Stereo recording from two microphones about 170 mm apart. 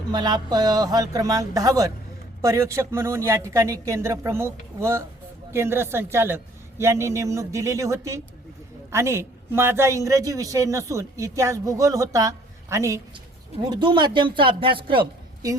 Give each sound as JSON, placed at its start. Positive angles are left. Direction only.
{"t": 0.1, "sound": "a man's voice", "side_deg": -25}